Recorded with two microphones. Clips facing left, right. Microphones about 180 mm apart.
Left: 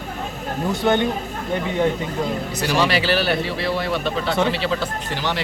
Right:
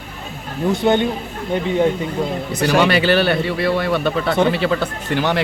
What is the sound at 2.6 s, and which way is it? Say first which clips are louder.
A man's voice: right 5 dB; 65° right (ahead or behind).